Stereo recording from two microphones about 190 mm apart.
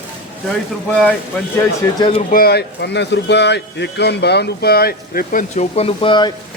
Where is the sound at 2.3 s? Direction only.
55° left (ahead or behind); by 6.3 s 25° left (ahead or behind).